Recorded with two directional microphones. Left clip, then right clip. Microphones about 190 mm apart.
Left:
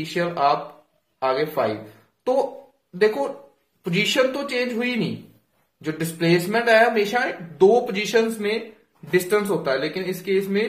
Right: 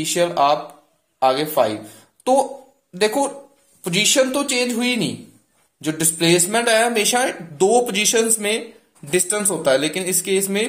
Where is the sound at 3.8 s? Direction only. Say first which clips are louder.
Right 3 dB; 35° right (ahead or behind).